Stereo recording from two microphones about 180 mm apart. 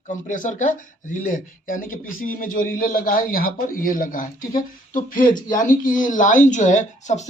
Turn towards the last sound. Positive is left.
turn(degrees=40)  # may be behind; listen again after turning